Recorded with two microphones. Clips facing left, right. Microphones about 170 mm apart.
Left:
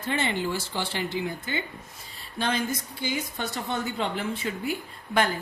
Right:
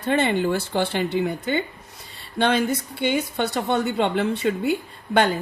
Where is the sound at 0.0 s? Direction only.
60° right (ahead or behind).